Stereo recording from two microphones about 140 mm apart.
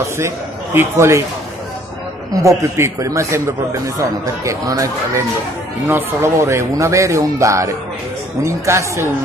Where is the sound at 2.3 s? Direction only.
20° right (ahead or behind).